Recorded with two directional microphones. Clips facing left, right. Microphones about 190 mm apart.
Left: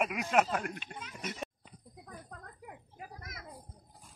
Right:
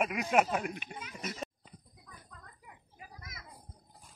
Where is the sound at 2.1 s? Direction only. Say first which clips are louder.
Left 6 dB; 50° left (ahead or behind).